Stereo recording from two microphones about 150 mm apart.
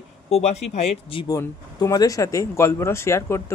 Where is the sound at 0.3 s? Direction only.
45° left (ahead or behind).